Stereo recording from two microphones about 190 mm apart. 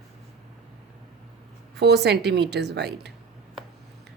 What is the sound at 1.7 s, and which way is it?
A woman's voice, 60° right (ahead or behind).